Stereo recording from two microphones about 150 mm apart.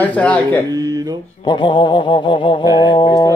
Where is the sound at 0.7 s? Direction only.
25° right (ahead or behind).